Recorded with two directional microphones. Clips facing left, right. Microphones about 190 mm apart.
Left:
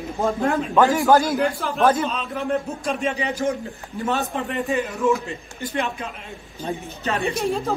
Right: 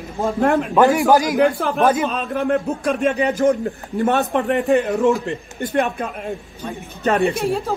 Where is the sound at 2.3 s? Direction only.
60° right (ahead or behind).